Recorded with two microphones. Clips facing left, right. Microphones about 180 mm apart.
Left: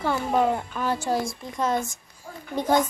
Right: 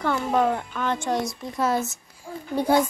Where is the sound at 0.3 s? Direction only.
5° left (ahead or behind).